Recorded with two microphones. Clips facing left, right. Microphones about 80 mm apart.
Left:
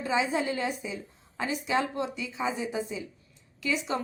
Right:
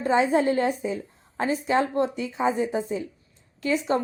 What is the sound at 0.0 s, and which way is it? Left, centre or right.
A woman's voice, right.